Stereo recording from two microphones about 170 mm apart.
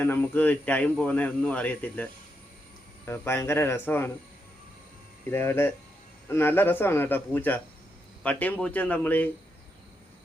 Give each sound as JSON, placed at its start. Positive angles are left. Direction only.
{"t": 0.0, "sound": "speech", "side_deg": 10}
{"t": 3.1, "sound": "speech", "side_deg": 15}
{"t": 5.3, "sound": "speech", "side_deg": 15}